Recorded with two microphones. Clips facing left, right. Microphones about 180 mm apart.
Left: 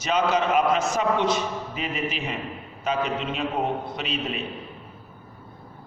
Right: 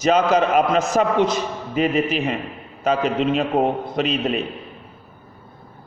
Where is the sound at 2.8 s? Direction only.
40° right (ahead or behind).